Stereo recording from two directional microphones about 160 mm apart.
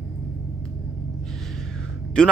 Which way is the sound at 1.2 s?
5° left (ahead or behind).